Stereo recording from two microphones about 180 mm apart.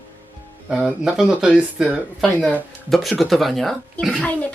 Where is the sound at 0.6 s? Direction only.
5° right (ahead or behind).